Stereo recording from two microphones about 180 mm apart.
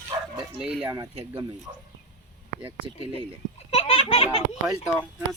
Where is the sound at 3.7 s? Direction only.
30° left (ahead or behind).